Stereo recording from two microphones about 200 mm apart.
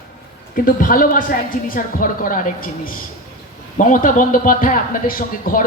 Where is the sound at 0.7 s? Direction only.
45° left (ahead or behind).